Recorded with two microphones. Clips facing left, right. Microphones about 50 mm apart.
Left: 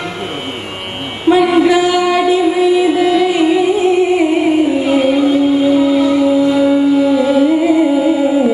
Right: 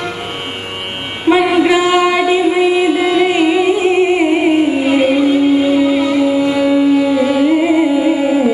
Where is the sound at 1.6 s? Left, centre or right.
Right.